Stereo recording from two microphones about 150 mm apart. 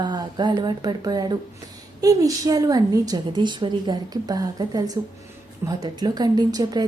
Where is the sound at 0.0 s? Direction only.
30° right (ahead or behind).